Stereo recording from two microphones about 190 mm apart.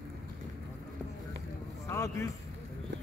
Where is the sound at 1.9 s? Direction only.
15° left (ahead or behind).